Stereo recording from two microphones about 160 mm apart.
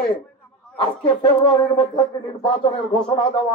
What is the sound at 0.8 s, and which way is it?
Speech, 30° left (ahead or behind).